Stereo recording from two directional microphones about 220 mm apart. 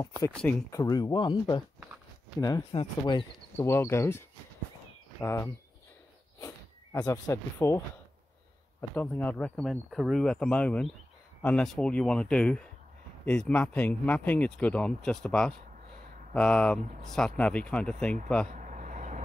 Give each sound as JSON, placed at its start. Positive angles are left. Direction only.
{"t": 0.3, "sound": "speech", "side_deg": 5}
{"t": 0.7, "sound": "speech", "side_deg": 15}
{"t": 3.5, "sound": "speech", "side_deg": 10}
{"t": 5.2, "sound": "speech", "side_deg": 10}
{"t": 8.9, "sound": "speech", "side_deg": 10}
{"t": 16.8, "sound": "speech", "side_deg": -35}
{"t": 17.1, "sound": "speech", "side_deg": 5}
{"t": 18.5, "sound": "a sound", "side_deg": -35}